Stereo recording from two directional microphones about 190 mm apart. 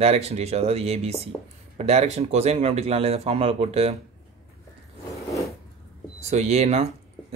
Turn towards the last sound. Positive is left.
turn(degrees=-35)  # may be behind; listen again after turning